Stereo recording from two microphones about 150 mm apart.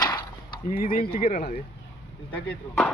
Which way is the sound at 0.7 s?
75° left (ahead or behind).